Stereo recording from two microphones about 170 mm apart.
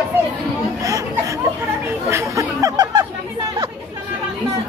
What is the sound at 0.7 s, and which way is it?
Chatter, 20° right (ahead or behind).